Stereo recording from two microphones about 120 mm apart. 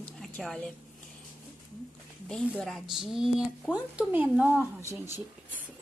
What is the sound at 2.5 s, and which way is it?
A woman's voice, centre (ahead or behind).